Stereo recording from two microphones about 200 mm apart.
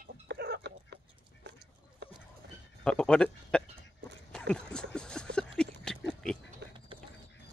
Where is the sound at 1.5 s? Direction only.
55° right (ahead or behind).